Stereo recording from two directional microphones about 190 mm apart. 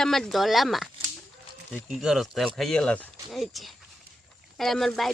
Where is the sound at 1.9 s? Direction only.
Centre (ahead or behind).